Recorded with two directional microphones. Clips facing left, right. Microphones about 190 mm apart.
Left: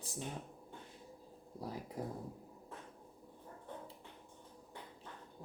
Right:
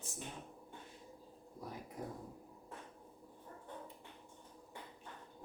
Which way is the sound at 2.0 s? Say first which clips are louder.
Left 3 dB; 35° left (ahead or behind).